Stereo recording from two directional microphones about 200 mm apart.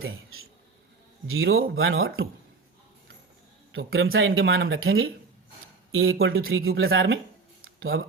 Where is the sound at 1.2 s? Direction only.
90° right.